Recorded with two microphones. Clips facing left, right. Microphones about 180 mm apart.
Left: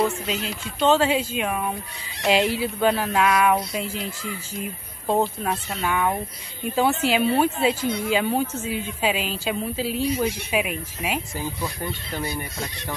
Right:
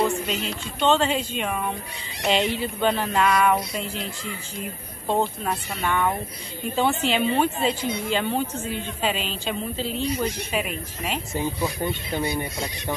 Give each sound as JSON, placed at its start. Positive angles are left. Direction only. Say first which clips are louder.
{"t": 0.0, "sound": "speech", "louder": "even", "side_deg": 5}
{"t": 5.0, "sound": "speech", "louder": "left 2 dB", "side_deg": 5}
{"t": 11.3, "sound": "speech", "louder": "right 4 dB", "side_deg": -20}